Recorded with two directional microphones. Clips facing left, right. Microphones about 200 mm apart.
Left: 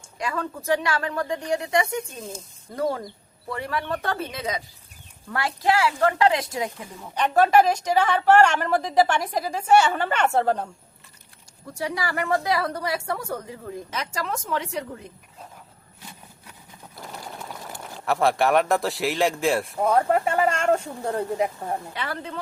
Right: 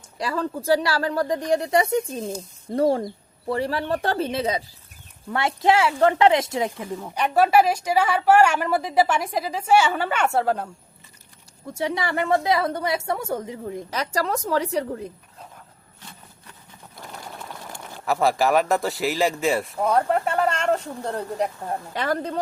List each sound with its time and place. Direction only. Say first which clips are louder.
0.2 s a woman's voice: right 3 dB; 35° right (ahead or behind)
7.1 s a woman's voice: even; 10° right (ahead or behind)
11.7 s a woman's voice: right 3 dB; 25° right (ahead or behind)
13.9 s speech: right 6 dB; 35° right (ahead or behind)
17.0 s speech: left 1 dB; 5° left (ahead or behind)
21.9 s speech: right 7 dB; 40° right (ahead or behind)